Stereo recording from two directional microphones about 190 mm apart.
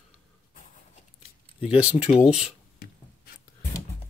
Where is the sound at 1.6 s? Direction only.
5° right (ahead or behind).